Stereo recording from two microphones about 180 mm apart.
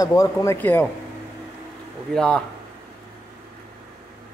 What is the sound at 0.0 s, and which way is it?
Speech, 20° left (ahead or behind).